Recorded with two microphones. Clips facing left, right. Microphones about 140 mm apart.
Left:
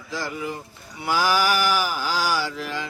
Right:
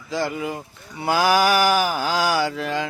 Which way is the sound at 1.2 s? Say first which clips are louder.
Right 4 dB; 60° right (ahead or behind).